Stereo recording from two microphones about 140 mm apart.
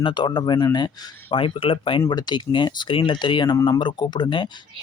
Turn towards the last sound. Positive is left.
turn(degrees=35)  # may be behind; listen again after turning